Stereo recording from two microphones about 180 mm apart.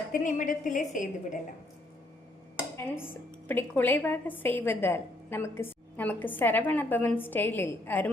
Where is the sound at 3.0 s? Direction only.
10° left (ahead or behind).